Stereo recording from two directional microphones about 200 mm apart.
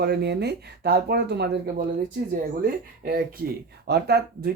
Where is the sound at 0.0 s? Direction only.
55° right (ahead or behind).